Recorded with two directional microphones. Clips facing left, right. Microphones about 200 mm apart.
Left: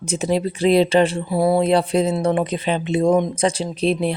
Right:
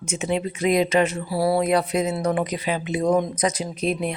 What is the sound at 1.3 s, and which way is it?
Speech, 20° left (ahead or behind).